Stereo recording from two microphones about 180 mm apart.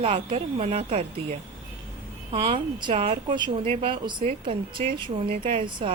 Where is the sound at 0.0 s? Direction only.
35° right (ahead or behind).